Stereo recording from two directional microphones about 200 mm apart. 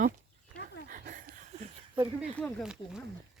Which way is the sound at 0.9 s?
40° right (ahead or behind).